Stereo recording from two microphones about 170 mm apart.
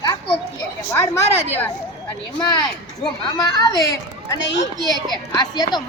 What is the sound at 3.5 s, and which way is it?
Speech, 20° left (ahead or behind).